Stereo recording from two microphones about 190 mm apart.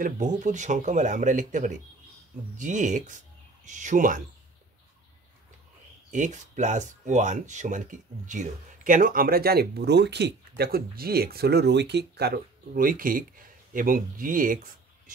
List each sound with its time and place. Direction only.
0.0 s speech: 40° right (ahead or behind)
6.1 s speech: 40° right (ahead or behind)